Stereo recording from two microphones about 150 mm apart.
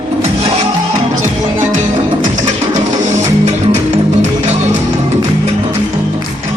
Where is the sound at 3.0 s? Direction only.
50° right (ahead or behind).